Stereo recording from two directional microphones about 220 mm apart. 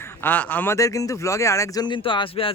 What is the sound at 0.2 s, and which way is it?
A man's voice, 5° left (ahead or behind).